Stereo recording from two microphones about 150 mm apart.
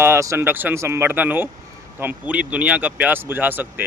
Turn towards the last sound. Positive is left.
turn(degrees=-10)  # may be behind; listen again after turning